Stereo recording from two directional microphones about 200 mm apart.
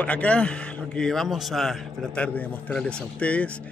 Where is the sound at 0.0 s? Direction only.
5° left (ahead or behind).